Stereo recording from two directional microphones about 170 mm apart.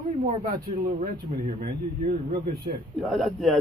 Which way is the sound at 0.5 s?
25° right (ahead or behind).